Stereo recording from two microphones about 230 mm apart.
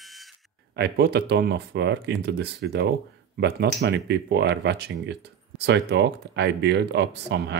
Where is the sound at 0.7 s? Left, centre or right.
Right.